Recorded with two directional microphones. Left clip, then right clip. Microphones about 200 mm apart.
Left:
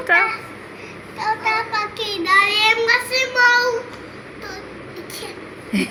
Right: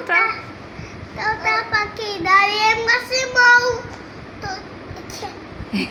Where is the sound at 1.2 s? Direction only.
Centre (ahead or behind).